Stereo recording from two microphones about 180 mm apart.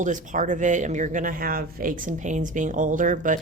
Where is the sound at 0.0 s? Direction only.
45° right (ahead or behind).